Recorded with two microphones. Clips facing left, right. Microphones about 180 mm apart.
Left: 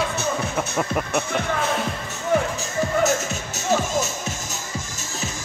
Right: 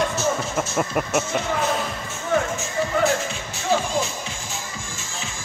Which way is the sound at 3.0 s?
45° left (ahead or behind).